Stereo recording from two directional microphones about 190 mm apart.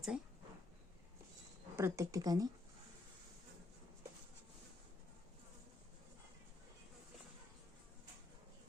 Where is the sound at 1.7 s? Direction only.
15° right (ahead or behind).